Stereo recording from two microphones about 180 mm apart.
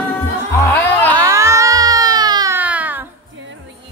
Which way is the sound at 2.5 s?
10° right (ahead or behind).